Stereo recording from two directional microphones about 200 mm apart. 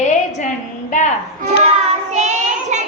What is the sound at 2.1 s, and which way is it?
Child singing, 35° right (ahead or behind).